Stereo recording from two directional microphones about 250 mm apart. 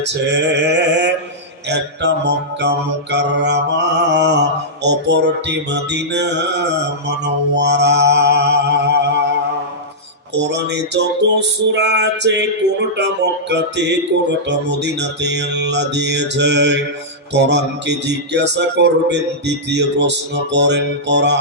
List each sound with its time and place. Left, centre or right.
0.0 s mantra: right
10.3 s mantra: right